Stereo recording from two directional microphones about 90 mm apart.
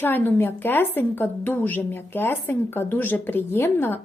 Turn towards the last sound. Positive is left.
turn(degrees=25)  # may be behind; listen again after turning